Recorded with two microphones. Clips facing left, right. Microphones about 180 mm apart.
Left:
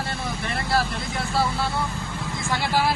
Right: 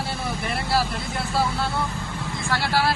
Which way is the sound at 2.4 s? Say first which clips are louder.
Even; 20° left (ahead or behind).